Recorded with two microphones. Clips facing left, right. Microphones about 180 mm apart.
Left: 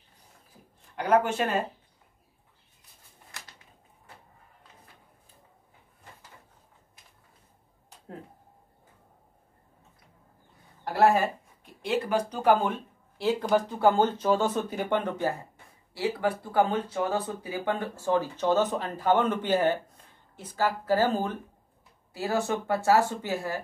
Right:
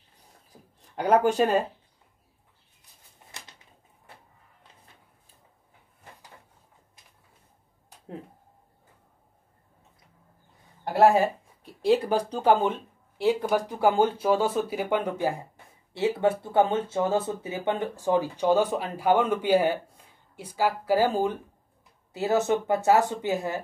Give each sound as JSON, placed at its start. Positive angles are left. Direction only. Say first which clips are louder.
{"t": 1.1, "sound": "speech", "louder": "right 3 dB", "side_deg": -35}
{"t": 10.8, "sound": "a sound", "louder": "right 3 dB", "side_deg": -25}
{"t": 11.6, "sound": "speech", "louder": "right 6 dB", "side_deg": -35}
{"t": 13.2, "sound": "speech", "louder": "right 1 dB", "side_deg": -10}
{"t": 15.9, "sound": "speech", "louder": "right 4 dB", "side_deg": -25}